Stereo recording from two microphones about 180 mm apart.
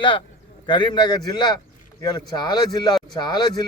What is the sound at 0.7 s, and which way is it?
A man's voice, 25° left (ahead or behind).